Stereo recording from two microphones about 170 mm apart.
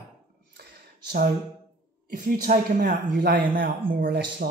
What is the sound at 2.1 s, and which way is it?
Speech, 55° right (ahead or behind).